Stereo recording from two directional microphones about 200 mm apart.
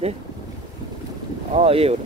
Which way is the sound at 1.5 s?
30° right (ahead or behind).